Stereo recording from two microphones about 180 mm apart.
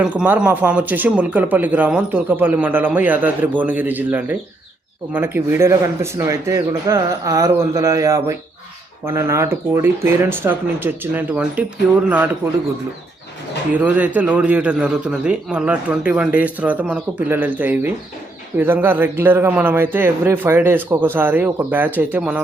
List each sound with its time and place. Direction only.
0.0 s a man's voice: 5° right (ahead or behind)
13.7 s a man's voice: 10° right (ahead or behind)